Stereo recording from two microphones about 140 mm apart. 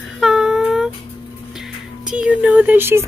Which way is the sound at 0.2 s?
5° right (ahead or behind).